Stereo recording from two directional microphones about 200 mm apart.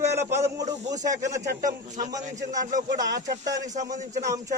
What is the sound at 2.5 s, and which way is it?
Speech, 40° right (ahead or behind).